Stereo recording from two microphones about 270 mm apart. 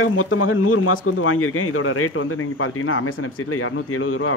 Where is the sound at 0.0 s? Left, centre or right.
Left.